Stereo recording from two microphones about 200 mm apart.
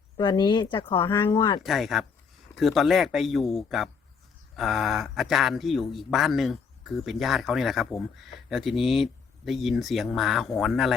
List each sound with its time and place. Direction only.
0.2 s speech: 25° left (ahead or behind)
1.0 s speech: 10° left (ahead or behind)
1.6 s speech: centre (ahead or behind)